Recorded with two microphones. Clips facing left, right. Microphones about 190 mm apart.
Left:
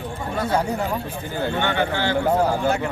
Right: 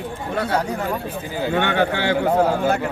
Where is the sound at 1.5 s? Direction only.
60° right (ahead or behind).